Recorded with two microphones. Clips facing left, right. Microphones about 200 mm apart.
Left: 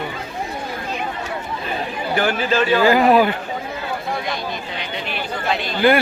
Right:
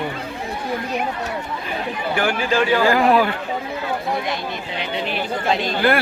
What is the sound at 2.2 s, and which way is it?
Speech, 10° right (ahead or behind).